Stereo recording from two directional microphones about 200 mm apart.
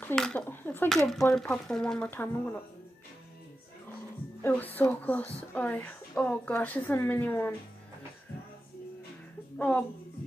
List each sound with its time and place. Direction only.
0.0 s speech: 5° left (ahead or behind)
4.4 s speech: 10° left (ahead or behind)
9.6 s speech: 5° left (ahead or behind)